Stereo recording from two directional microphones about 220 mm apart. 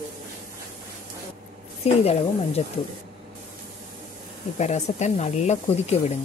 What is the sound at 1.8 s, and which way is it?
Speech, 30° left (ahead or behind).